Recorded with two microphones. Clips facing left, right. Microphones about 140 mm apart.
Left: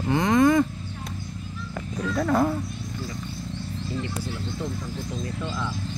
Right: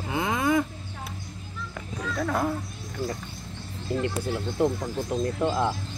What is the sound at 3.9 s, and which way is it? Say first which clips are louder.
Speech: right 6 dB; 60° right (ahead or behind).